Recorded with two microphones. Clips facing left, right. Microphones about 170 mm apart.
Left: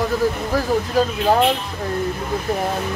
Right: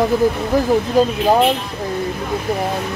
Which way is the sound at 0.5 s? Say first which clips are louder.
Right 5 dB; 15° right (ahead or behind).